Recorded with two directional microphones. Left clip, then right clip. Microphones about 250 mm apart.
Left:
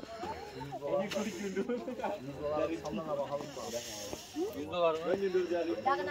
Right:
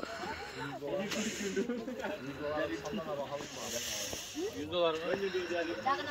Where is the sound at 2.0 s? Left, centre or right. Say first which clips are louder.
Left 2 dB; left.